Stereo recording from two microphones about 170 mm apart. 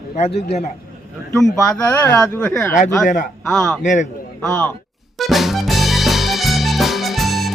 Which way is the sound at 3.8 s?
45° left (ahead or behind).